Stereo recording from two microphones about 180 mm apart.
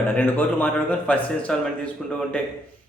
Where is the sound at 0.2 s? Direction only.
10° left (ahead or behind).